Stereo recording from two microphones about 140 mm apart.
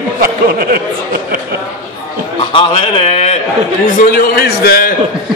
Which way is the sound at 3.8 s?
80° left.